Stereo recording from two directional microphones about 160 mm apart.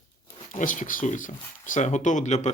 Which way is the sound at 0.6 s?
55° left (ahead or behind).